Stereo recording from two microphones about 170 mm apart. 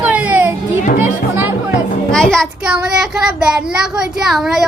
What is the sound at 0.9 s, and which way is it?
Music, 45° left (ahead or behind).